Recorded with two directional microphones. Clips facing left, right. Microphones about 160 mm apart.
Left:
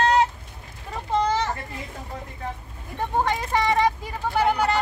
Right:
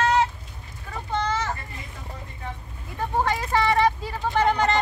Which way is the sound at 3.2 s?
15° left (ahead or behind).